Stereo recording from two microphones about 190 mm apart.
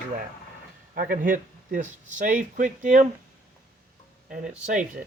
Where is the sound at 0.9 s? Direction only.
50° right (ahead or behind).